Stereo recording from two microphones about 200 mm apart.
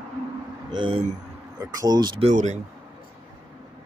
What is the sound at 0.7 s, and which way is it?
Speech, 25° right (ahead or behind).